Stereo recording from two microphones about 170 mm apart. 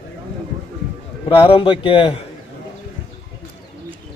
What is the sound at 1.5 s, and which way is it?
Speech, 30° left (ahead or behind).